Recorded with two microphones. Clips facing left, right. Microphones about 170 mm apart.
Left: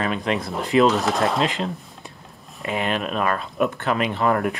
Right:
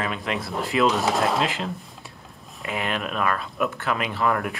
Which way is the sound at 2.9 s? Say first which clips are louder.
Left 1 dB; 30° left (ahead or behind).